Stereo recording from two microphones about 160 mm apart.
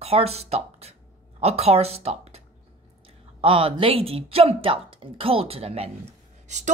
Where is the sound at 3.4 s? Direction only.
35° right (ahead or behind).